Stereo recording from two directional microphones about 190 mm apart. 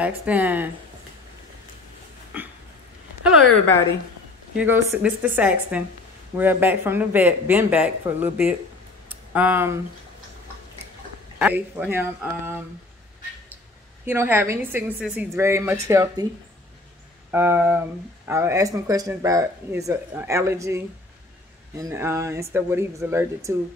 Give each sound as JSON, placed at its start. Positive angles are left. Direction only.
{"t": 0.0, "sound": "speech", "side_deg": -10}
{"t": 4.6, "sound": "speech", "side_deg": -10}
{"t": 11.3, "sound": "speech", "side_deg": -10}
{"t": 14.0, "sound": "speech", "side_deg": -10}
{"t": 17.3, "sound": "speech", "side_deg": -10}